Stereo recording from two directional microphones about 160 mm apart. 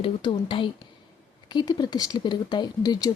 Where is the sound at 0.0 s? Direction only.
30° left (ahead or behind).